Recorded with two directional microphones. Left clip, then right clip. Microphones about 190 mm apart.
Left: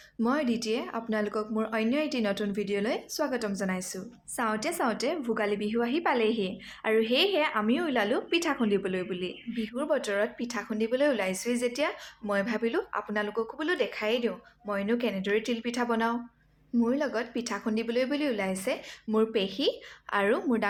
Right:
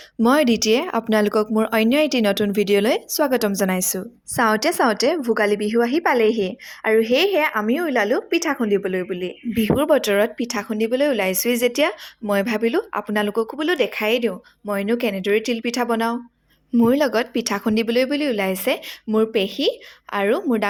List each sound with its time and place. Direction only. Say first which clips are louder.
0.2 s speech: right 12 dB; 50° right (ahead or behind); by 9.6 s 30° right (ahead or behind)
9.6 s speech: right 12 dB; 50° right (ahead or behind)
16.7 s speech: right 11 dB; 50° right (ahead or behind)
19.0 s speech: right 8 dB; 30° right (ahead or behind)